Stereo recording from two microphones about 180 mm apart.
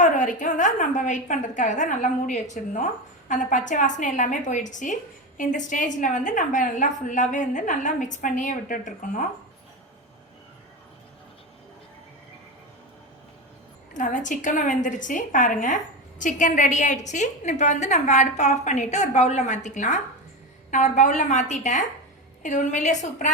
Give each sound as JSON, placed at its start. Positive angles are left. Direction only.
{"t": 0.0, "sound": "a woman's voice", "side_deg": 45}
{"t": 13.9, "sound": "a woman's voice", "side_deg": 45}